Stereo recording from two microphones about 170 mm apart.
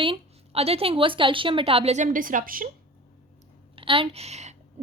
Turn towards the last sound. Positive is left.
turn(degrees=-40)  # may be behind; listen again after turning